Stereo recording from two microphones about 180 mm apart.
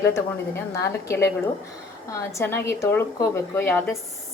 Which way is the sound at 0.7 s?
15° left (ahead or behind).